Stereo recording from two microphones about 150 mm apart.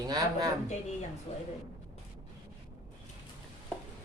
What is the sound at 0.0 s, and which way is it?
Speech, 25° right (ahead or behind).